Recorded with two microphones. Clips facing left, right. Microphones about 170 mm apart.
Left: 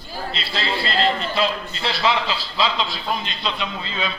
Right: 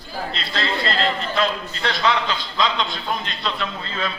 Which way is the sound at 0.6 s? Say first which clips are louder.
Right 1 dB; 30° left (ahead or behind).